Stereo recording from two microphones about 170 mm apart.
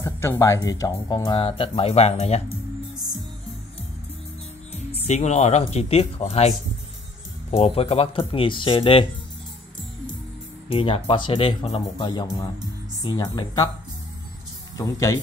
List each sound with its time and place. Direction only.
0.0 s speech: 15° left (ahead or behind); by 2.4 s 40° left (ahead or behind)
5.0 s speech: 40° left (ahead or behind)
7.5 s speech: 35° left (ahead or behind)
10.7 s speech: 30° left (ahead or behind)
14.8 s speech: 20° left (ahead or behind)